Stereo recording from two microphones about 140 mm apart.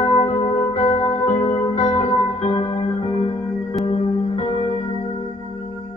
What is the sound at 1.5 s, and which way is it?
Music, 50° left (ahead or behind).